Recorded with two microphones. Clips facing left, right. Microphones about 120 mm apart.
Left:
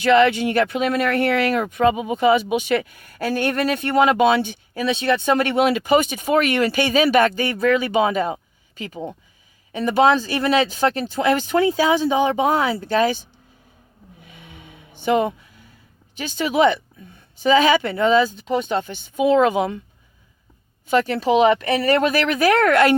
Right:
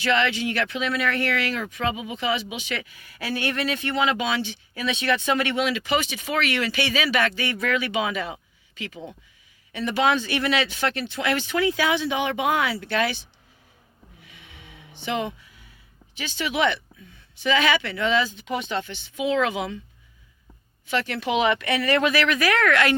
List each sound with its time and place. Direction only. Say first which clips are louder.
0.0 s speech: left 8 dB; 45° left (ahead or behind)
14.2 s a sound: left 6 dB; 45° left (ahead or behind)
16.1 s speech: left 7 dB; 45° left (ahead or behind)
20.8 s speech: left 7 dB; 45° left (ahead or behind)